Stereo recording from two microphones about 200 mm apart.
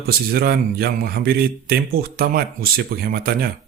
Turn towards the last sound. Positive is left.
turn(degrees=-50)  # may be behind; listen again after turning